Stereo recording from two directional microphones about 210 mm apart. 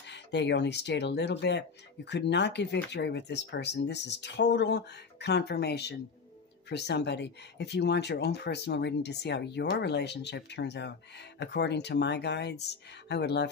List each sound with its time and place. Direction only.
0.0 s speech: 55° left (ahead or behind)